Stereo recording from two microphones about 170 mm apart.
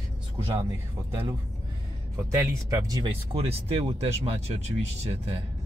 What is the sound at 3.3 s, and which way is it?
Speech, 35° right (ahead or behind).